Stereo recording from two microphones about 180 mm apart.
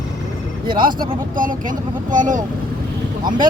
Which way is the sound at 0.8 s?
50° right (ahead or behind).